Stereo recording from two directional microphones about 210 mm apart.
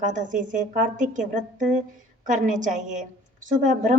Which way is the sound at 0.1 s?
35° right (ahead or behind).